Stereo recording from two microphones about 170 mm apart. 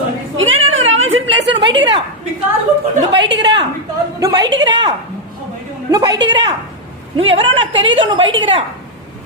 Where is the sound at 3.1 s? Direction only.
90° right.